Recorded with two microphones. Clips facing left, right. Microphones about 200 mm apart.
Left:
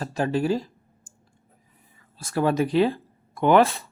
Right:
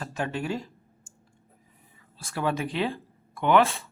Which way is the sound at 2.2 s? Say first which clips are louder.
Left 6 dB; 40° left (ahead or behind).